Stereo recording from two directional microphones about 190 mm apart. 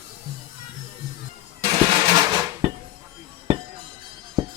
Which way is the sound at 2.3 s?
20° right (ahead or behind).